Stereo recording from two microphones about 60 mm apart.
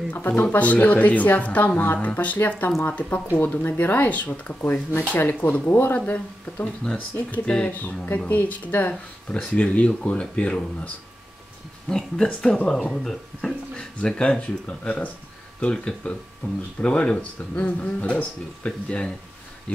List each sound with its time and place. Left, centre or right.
0.5 s speech: left
11.9 s speech: centre